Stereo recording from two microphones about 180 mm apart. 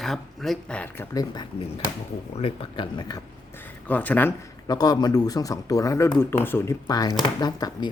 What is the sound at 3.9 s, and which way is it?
Speech, 10° left (ahead or behind).